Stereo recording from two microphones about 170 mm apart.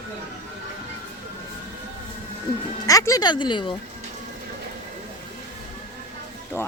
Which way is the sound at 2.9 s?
20° left (ahead or behind).